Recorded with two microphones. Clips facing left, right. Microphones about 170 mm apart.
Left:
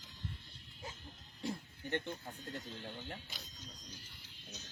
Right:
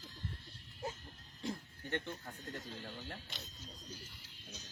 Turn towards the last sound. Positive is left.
turn(degrees=5)  # may be behind; listen again after turning